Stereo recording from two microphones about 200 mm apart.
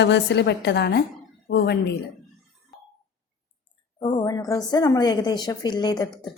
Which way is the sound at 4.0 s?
25° left (ahead or behind).